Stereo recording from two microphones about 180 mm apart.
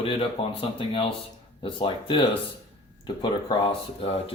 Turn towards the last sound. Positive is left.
turn(degrees=30)  # may be behind; listen again after turning